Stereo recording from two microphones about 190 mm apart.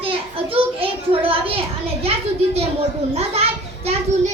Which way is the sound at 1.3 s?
30° right (ahead or behind).